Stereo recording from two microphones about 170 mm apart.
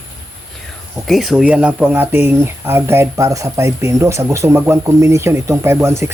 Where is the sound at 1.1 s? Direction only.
Centre (ahead or behind).